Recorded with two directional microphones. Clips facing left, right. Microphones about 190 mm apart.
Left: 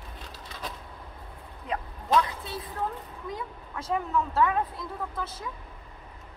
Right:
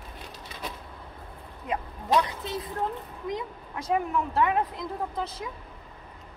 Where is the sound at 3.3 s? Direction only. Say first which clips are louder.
Right 4 dB; 15° right (ahead or behind).